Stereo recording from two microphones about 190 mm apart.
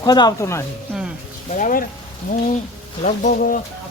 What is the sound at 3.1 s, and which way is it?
Speech, 45° left (ahead or behind).